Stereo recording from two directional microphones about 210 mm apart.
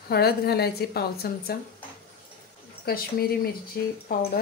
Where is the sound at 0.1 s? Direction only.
50° left (ahead or behind).